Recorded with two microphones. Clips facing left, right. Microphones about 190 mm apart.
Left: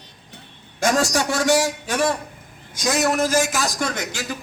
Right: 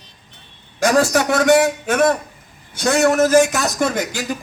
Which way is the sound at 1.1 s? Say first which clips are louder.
Right 5 dB; 60° right (ahead or behind).